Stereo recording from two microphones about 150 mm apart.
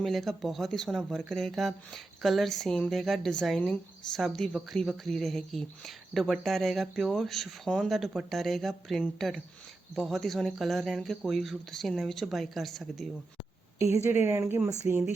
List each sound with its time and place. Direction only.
0.0 s speech: centre (ahead or behind)
13.9 s speech: 15° right (ahead or behind)